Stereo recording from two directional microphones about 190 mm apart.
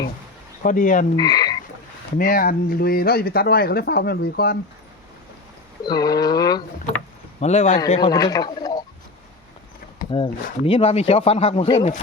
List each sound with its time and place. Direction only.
0.6 s speech: 45° left (ahead or behind)
1.1 s speech: 20° left (ahead or behind)
2.1 s speech: 50° left (ahead or behind)
5.8 s speech: 20° left (ahead or behind)
7.3 s speech: 35° left (ahead or behind)
7.9 s speech: 20° left (ahead or behind)
10.0 s a sound: 50° left (ahead or behind)
10.6 s speech: 30° left (ahead or behind)